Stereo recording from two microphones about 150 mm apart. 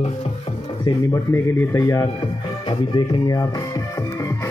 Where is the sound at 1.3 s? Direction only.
15° left (ahead or behind).